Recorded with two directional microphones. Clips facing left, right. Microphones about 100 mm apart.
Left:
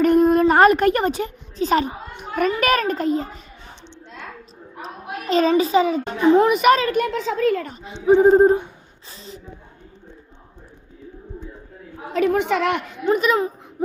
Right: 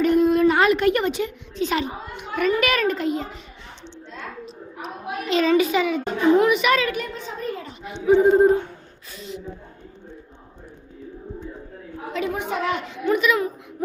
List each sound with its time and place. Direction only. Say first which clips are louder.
0.0 s a woman's voice: left 2 dB; 45° left (ahead or behind)
5.3 s a child's voice: left 2 dB; 40° left (ahead or behind)
7.0 s a child's voice: left 10 dB; 90° left
7.8 s a child's voice: left 1 dB; 35° left (ahead or behind)
12.1 s a woman's voice: left 7 dB; 55° left (ahead or behind)
13.1 s a child's voice: left 2 dB; 35° left (ahead or behind)